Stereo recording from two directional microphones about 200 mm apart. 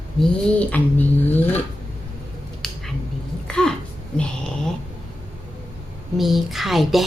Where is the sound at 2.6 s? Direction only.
Centre (ahead or behind).